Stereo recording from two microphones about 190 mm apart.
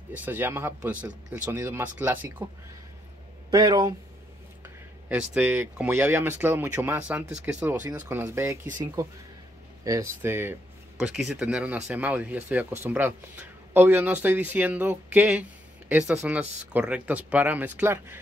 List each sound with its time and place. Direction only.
0.1 s speech: 10° right (ahead or behind)
3.4 s speech: 20° right (ahead or behind)
5.3 s speech: 10° right (ahead or behind)